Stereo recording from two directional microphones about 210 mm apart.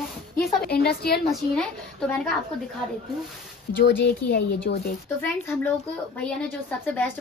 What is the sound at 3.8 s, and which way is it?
Speech, 55° left (ahead or behind).